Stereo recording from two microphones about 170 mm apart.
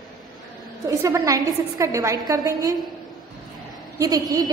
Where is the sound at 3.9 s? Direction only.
20° right (ahead or behind).